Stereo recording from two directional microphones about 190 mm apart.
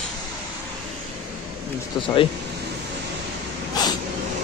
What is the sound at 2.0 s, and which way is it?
Speech, 25° left (ahead or behind).